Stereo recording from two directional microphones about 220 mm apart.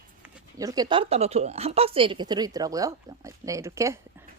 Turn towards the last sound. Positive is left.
turn(degrees=-15)  # may be behind; listen again after turning